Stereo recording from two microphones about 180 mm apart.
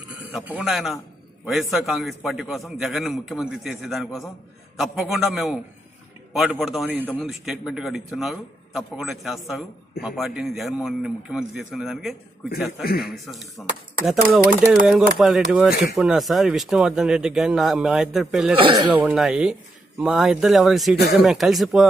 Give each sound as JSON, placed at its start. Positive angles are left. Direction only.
{"t": 0.2, "sound": "a man's voice", "side_deg": -5}
{"t": 12.8, "sound": "a man's voice", "side_deg": 60}
{"t": 13.1, "sound": "a man's voice", "side_deg": 0}
{"t": 18.6, "sound": "speech", "side_deg": -25}
{"t": 19.0, "sound": "a man's voice", "side_deg": -5}